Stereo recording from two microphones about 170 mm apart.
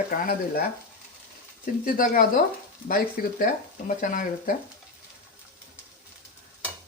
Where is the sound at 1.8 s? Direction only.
55° left (ahead or behind).